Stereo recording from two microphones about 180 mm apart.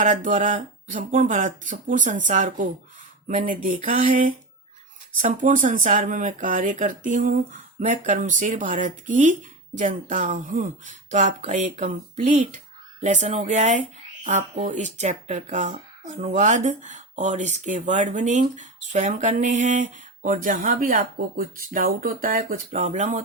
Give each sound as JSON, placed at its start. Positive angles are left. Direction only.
{"t": 0.0, "sound": "speech", "side_deg": -45}